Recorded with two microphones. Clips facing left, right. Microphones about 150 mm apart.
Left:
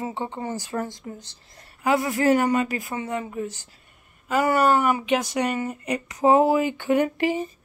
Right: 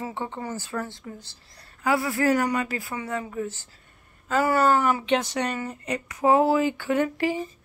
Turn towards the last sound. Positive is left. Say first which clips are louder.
# left 2 dB
turn(degrees=20)  # may be behind; listen again after turning